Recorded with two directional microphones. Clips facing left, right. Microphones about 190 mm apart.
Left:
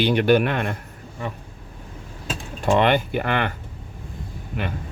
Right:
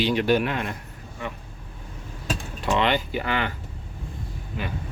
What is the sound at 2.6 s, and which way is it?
Speech, 50° left (ahead or behind).